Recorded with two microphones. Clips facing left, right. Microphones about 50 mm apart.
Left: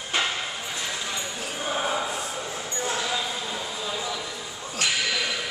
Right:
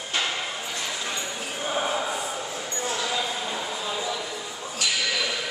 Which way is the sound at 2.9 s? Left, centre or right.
Centre.